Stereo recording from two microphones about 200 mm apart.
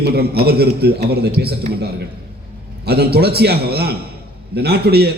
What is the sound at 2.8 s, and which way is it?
A man's voice, 50° right (ahead or behind).